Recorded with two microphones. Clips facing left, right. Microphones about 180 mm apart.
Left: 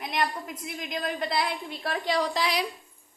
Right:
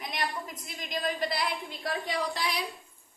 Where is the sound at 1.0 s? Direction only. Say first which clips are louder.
Left 2 dB; 60° left (ahead or behind); by 2.6 s 90° left.